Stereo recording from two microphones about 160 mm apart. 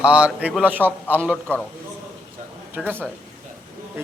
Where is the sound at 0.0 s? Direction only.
5° right (ahead or behind).